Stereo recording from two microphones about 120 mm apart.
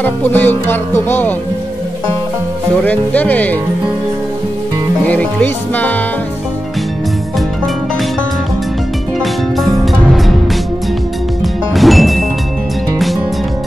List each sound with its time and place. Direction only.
0.0 s music: 15° left (ahead or behind)
2.8 s music: 15° left (ahead or behind)
5.0 s music: 10° left (ahead or behind)
9.2 s music: centre (ahead or behind)
11.7 s ding: centre (ahead or behind)